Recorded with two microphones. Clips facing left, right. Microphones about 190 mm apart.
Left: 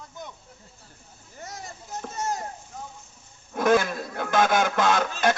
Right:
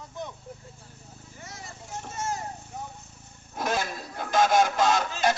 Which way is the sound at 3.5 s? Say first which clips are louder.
Left 8 dB; 55° left (ahead or behind).